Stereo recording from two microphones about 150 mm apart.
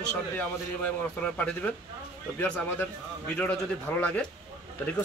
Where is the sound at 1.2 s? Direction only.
10° left (ahead or behind).